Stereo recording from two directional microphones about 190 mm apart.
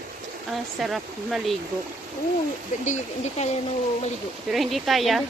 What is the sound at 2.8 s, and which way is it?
Speech, 40° left (ahead or behind).